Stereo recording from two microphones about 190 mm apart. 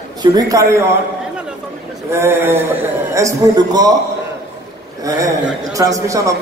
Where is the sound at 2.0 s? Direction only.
15° right (ahead or behind).